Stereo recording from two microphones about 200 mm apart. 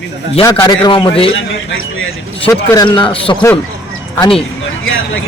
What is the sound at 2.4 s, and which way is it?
A man's voice, 15° left (ahead or behind).